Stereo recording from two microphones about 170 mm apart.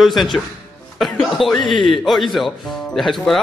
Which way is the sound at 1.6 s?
30° left (ahead or behind).